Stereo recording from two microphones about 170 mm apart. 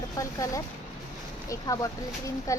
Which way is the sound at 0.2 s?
20° left (ahead or behind).